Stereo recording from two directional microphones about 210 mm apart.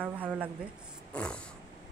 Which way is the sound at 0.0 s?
5° right (ahead or behind).